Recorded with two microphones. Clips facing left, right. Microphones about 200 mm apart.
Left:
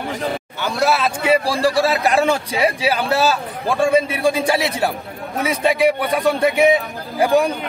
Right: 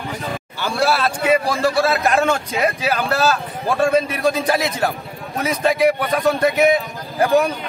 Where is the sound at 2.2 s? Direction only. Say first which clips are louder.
Left 1 dB; 30° left (ahead or behind).